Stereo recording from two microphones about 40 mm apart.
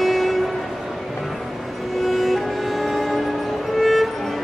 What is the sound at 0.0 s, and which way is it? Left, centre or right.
Music, centre.